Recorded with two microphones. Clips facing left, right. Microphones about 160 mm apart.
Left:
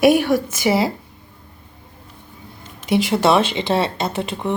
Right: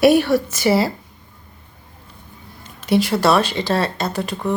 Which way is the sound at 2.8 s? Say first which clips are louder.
Even; 20° left (ahead or behind).